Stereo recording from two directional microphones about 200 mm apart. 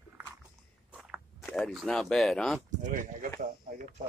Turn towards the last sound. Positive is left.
turn(degrees=-45)  # may be behind; listen again after turning